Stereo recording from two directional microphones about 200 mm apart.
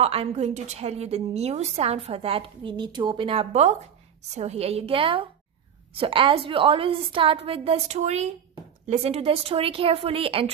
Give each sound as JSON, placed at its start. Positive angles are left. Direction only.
{"t": 0.0, "sound": "a woman's voice", "side_deg": -30}